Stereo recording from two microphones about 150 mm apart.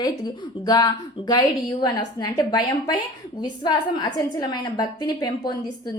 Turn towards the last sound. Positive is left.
turn(degrees=25)  # may be behind; listen again after turning